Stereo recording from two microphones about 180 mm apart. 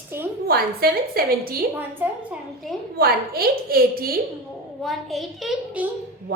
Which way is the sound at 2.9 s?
60° right (ahead or behind).